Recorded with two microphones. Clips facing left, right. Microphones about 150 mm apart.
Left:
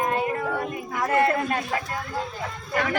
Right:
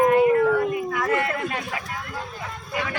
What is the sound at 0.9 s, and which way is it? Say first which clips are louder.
Speech: left 2 dB; 35° left (ahead or behind).